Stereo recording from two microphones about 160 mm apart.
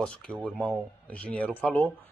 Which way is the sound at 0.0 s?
5° left (ahead or behind).